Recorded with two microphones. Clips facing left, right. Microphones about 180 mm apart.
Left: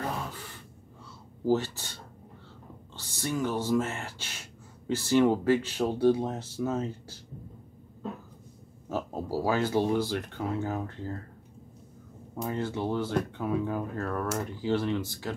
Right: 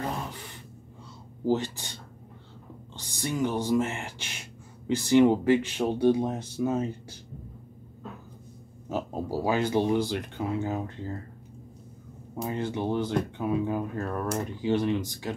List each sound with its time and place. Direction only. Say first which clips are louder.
1.4 s speech: even; 15° right (ahead or behind)
3.0 s speech: right 2 dB; 15° right (ahead or behind)
8.8 s speech: right 2 dB; 15° right (ahead or behind)
12.4 s speech: right 1 dB; 15° right (ahead or behind)